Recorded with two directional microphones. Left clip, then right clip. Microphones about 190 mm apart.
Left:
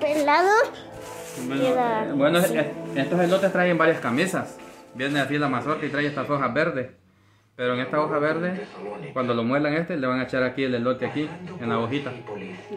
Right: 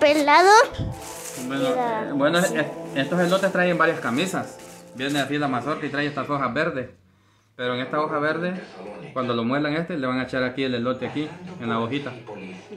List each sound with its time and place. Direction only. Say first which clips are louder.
0.2 s a sound: right 4 dB; 10° right (ahead or behind)
1.6 s speech: left 1 dB; 10° left (ahead or behind)
2.5 s speech: even; centre (ahead or behind)
3.5 s speech: even; 15° left (ahead or behind)
4.9 s speech: even; 5° left (ahead or behind)